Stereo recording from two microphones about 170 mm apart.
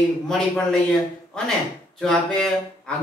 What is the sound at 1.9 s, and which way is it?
Speech, centre (ahead or behind).